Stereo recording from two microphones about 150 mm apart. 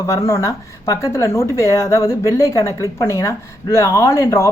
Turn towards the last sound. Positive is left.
turn(degrees=20)  # may be behind; listen again after turning